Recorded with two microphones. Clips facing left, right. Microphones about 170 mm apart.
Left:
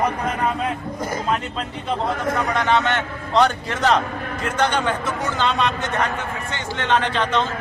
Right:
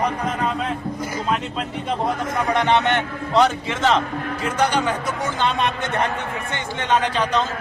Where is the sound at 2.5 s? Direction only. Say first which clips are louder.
Right 3 dB; 20° right (ahead or behind).